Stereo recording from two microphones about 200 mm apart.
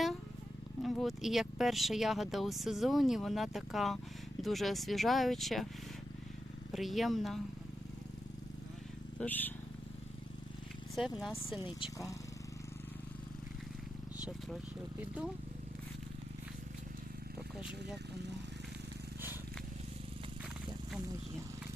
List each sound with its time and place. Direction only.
0.8 s speech: centre (ahead or behind)
6.7 s speech: centre (ahead or behind)
9.1 s speech: 10° left (ahead or behind)
10.9 s speech: centre (ahead or behind)
11.8 s speech: 15° left (ahead or behind)
17.6 s speech: 5° right (ahead or behind)